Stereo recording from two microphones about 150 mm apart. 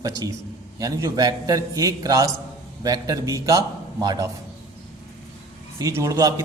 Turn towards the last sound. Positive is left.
turn(degrees=-20)  # may be behind; listen again after turning